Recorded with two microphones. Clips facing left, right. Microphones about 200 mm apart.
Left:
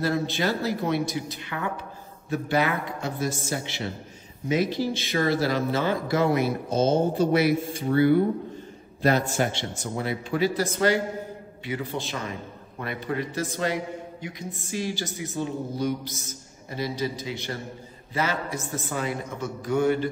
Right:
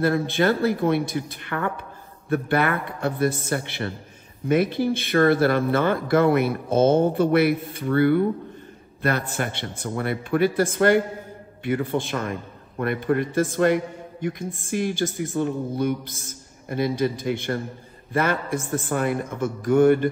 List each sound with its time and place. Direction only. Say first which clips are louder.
0.0 s a man's voice: right 5 dB; 55° right (ahead or behind)